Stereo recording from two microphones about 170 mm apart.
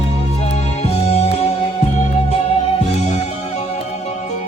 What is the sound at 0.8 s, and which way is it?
Music, 40° left (ahead or behind).